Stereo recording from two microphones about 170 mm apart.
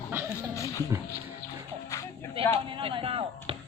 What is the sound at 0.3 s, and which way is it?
Music, 20° left (ahead or behind).